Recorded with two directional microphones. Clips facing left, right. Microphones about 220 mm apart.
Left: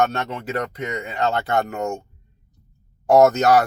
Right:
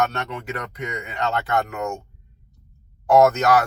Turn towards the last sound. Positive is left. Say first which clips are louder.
# left 2 dB
turn(degrees=30)  # may be behind; listen again after turning